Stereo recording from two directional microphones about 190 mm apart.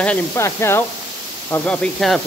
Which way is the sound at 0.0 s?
10° left (ahead or behind).